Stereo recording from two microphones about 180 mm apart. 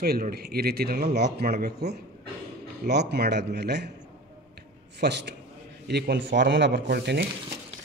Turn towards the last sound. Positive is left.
turn(degrees=-65)  # may be behind; listen again after turning